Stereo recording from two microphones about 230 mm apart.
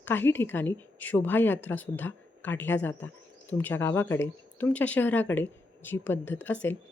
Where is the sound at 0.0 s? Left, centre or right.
Centre.